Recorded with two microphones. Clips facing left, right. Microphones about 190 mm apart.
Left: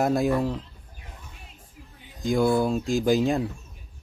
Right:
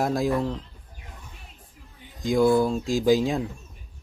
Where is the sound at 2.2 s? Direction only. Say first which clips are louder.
Right 2 dB; centre (ahead or behind).